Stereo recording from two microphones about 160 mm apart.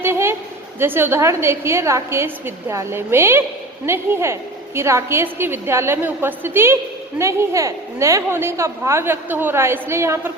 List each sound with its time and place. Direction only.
0.0 s a woman's voice: 15° right (ahead or behind)